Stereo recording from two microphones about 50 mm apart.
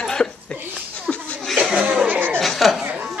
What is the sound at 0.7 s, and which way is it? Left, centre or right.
Chuckle, centre.